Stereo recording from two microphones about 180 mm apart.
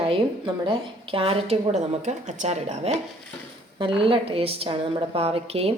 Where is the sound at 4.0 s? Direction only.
30° right (ahead or behind).